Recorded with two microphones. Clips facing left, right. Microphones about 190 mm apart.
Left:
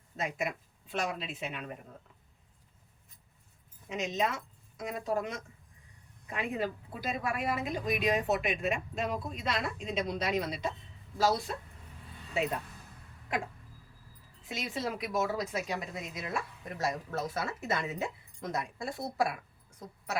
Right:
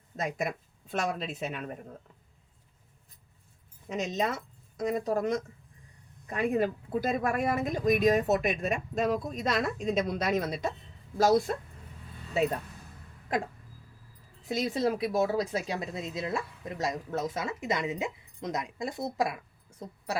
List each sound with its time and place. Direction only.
0.2 s speech: 40° right (ahead or behind)
3.8 s speech: 40° right (ahead or behind)
14.4 s speech: 40° right (ahead or behind); by 19.4 s 20° right (ahead or behind)